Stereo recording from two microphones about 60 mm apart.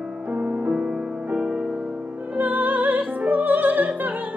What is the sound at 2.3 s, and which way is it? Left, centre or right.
Music, right.